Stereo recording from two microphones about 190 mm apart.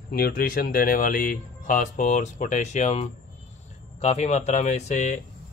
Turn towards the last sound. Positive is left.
turn(degrees=40)  # may be behind; listen again after turning